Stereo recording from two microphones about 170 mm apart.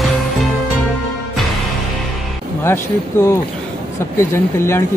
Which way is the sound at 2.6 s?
15° left (ahead or behind).